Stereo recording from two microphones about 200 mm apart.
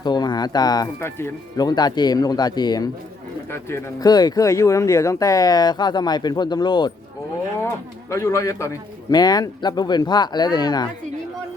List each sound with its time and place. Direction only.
0.0 s speech: 20° left (ahead or behind)
8.1 s speech: 15° left (ahead or behind)